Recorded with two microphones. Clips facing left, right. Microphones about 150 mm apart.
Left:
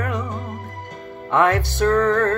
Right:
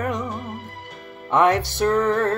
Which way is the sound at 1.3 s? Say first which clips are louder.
Even; 20° right (ahead or behind).